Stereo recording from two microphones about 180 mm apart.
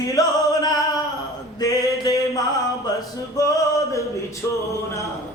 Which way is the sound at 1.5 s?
20° left (ahead or behind).